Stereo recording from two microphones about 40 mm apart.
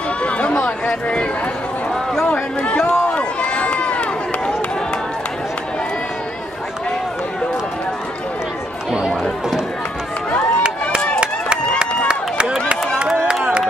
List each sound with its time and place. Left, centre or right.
0.2 s run: left
2.3 s run: left
11.1 s a sound: right
13.3 s crowd: right